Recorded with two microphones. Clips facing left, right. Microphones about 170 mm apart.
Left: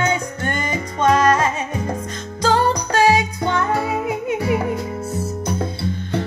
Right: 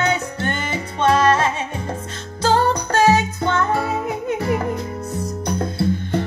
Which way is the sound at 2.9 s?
10° left (ahead or behind).